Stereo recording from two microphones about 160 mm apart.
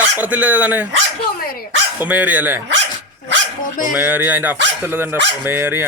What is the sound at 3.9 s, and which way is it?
A man's voice, 10° right (ahead or behind).